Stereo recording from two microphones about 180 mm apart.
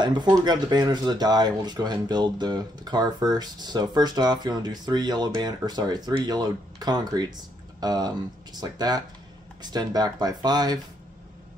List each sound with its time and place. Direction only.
0.0 s speech: 20° right (ahead or behind)